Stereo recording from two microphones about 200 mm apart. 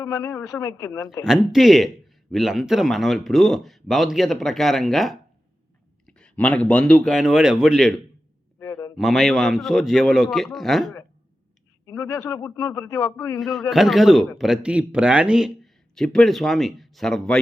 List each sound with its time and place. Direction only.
0.0 s a man's voice: 15° left (ahead or behind)
1.2 s speech: centre (ahead or behind)
8.5 s a sound: 15° left (ahead or behind)
9.0 s speech: centre (ahead or behind)
11.9 s a man's voice: 15° left (ahead or behind)
13.4 s speech: centre (ahead or behind)